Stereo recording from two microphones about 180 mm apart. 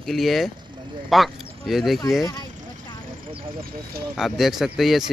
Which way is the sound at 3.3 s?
30° right (ahead or behind).